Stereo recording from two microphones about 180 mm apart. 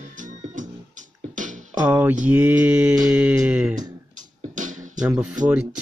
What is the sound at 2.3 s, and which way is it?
Music, 5° right (ahead or behind).